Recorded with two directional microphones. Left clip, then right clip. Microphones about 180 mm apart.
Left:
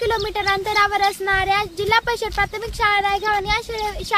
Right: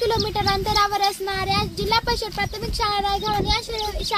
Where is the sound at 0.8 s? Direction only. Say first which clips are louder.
Left 3 dB; 5° left (ahead or behind).